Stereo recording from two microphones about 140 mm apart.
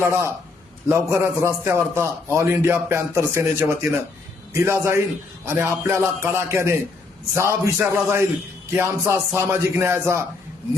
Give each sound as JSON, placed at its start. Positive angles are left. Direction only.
{"t": 0.0, "sound": "a man's voice", "side_deg": -15}